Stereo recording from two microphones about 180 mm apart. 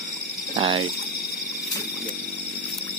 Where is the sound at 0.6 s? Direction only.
35° right (ahead or behind).